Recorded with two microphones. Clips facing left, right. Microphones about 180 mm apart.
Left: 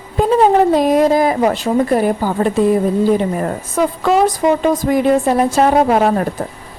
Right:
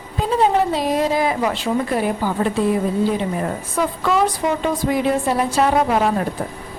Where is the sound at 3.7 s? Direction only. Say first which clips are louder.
Left 5 dB; 45° left (ahead or behind).